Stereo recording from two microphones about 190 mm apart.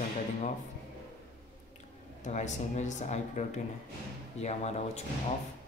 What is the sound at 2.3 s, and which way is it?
Speech, 35° left (ahead or behind).